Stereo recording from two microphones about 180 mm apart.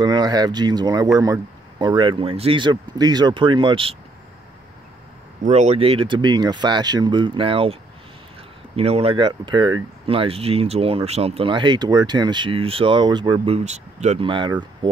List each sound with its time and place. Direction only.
0.0 s speech: 25° right (ahead or behind)
5.4 s speech: 40° right (ahead or behind)
8.7 s speech: 35° right (ahead or behind)